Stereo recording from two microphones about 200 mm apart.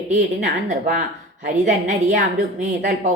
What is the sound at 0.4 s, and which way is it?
A woman's voice, 45° right (ahead or behind).